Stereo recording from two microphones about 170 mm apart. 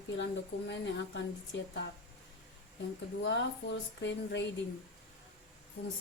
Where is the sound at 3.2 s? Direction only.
90° left.